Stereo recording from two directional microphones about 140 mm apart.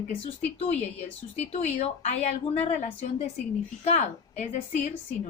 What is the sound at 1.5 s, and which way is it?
Speech, 55° left (ahead or behind).